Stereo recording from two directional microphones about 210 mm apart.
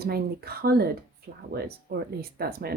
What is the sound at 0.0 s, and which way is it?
Speech, 50° right (ahead or behind).